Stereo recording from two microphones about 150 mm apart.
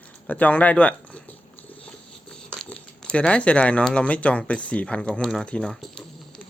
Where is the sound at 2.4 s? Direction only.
5° left (ahead or behind).